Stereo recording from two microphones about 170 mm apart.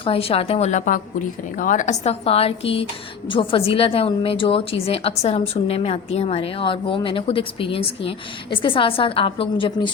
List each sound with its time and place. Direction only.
0.0 s a woman's voice: 35° left (ahead or behind)